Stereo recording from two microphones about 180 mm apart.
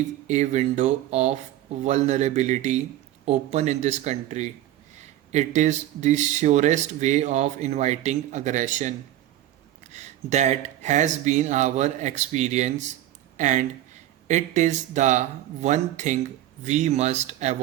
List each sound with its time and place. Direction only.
0.3 s speech: 40° right (ahead or behind)
9.9 s speech: 40° right (ahead or behind)